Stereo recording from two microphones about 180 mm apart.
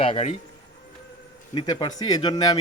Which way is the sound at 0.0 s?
35° left (ahead or behind).